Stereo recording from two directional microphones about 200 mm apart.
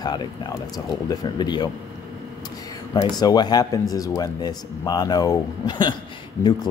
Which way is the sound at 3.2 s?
20° left (ahead or behind).